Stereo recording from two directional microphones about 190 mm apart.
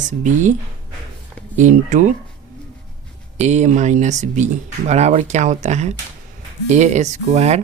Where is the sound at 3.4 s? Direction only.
35° right (ahead or behind).